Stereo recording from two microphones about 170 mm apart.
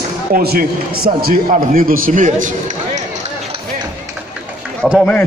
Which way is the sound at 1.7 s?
55° right (ahead or behind).